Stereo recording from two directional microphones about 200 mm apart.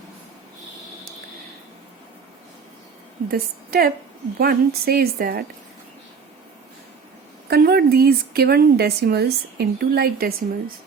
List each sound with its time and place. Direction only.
3.2 s a woman's voice: 50° right (ahead or behind)
7.5 s a woman's voice: 50° right (ahead or behind)